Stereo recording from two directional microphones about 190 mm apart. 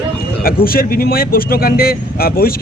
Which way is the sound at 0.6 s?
50° left (ahead or behind).